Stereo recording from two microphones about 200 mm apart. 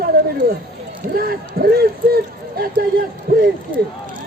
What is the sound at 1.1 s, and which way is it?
Speech, 50° right (ahead or behind).